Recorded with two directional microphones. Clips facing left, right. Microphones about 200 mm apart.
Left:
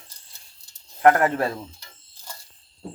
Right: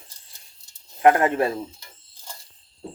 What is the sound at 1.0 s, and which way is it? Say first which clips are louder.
Speech: right 1 dB; 20° right (ahead or behind).